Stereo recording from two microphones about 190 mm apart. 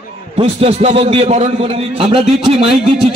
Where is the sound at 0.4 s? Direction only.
30° right (ahead or behind).